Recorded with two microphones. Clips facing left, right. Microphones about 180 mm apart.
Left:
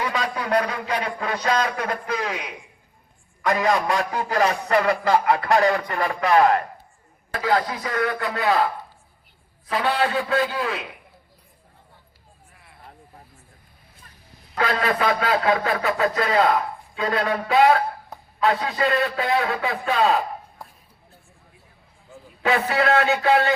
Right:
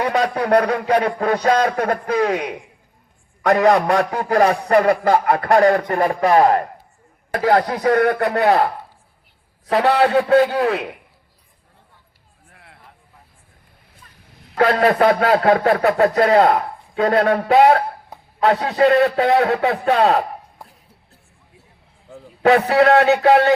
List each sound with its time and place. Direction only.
0.0 s speech: 60° right (ahead or behind)
1.0 s a man's voice: 50° right (ahead or behind)
7.3 s speech: 60° right (ahead or behind)
12.5 s a sound: 65° right (ahead or behind)
14.6 s a man's voice: 55° right (ahead or behind)
18.7 s music: 65° right (ahead or behind)
19.8 s speech: 65° right (ahead or behind)
22.1 s a sound: 65° right (ahead or behind)
22.7 s music: 70° right (ahead or behind)